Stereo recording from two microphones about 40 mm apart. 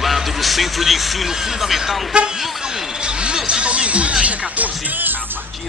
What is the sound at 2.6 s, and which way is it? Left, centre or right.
Music, right.